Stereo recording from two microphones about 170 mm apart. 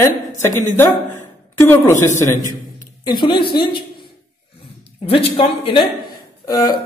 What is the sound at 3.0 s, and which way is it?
Speech, 25° left (ahead or behind).